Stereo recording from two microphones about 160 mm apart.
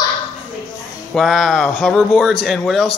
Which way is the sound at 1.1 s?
Centre (ahead or behind).